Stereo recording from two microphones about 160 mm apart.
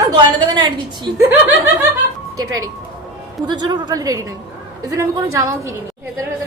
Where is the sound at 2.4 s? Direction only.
20° right (ahead or behind).